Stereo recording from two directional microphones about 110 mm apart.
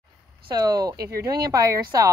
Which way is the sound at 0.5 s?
35° right (ahead or behind).